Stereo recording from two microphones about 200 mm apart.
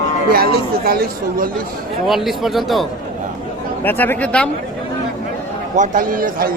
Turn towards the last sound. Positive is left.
turn(degrees=-45)  # may be behind; listen again after turning